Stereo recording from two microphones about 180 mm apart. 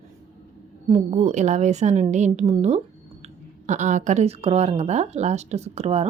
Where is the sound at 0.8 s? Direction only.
35° right (ahead or behind).